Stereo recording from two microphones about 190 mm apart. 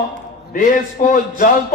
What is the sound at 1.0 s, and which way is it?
Speech, 45° left (ahead or behind).